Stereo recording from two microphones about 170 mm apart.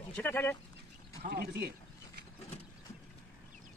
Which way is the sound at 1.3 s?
65° right (ahead or behind).